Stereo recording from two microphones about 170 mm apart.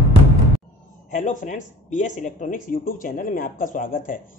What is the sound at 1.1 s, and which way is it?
Speech, 45° left (ahead or behind).